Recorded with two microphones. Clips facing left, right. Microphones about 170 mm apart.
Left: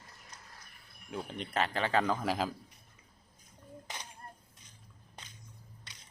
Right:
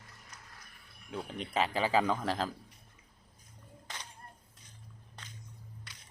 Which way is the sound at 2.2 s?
10° left (ahead or behind).